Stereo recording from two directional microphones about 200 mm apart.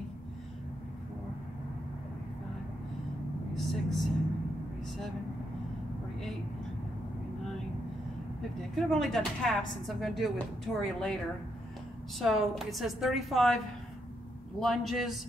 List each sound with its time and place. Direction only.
3.5 s vehicle: centre (ahead or behind)
8.7 s a woman's voice: centre (ahead or behind)
12.2 s a woman's voice: centre (ahead or behind)
14.6 s a woman's voice: centre (ahead or behind)